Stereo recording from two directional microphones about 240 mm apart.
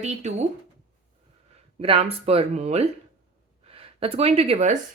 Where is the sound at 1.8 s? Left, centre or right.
Right.